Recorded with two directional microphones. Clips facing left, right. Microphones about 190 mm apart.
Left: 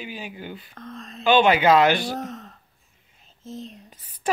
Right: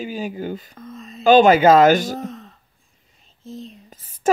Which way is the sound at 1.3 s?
40° right (ahead or behind).